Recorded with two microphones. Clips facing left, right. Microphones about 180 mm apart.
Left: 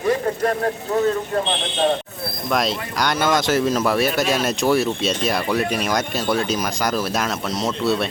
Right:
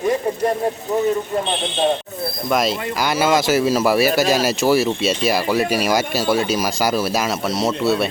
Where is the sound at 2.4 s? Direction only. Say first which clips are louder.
Right 2 dB; centre (ahead or behind).